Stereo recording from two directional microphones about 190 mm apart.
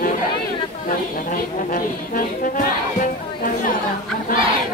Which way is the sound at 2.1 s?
45° left (ahead or behind).